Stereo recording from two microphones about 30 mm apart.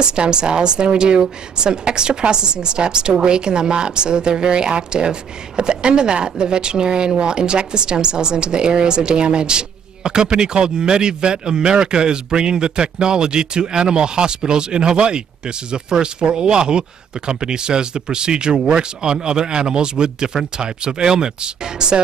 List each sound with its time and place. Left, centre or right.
0.0 s a woman's voice: right